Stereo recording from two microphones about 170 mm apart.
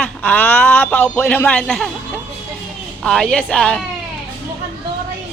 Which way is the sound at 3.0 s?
5° left (ahead or behind).